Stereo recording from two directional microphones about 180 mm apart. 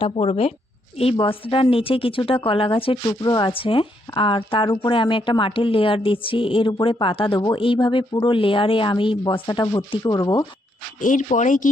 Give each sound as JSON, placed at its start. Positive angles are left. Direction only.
{"t": 0.0, "sound": "speech", "side_deg": 30}
{"t": 11.0, "sound": "speech", "side_deg": 45}